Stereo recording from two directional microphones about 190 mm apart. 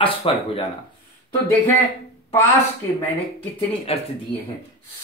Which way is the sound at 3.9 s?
30° left (ahead or behind).